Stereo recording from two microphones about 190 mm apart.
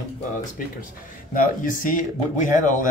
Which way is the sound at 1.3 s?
45° left (ahead or behind).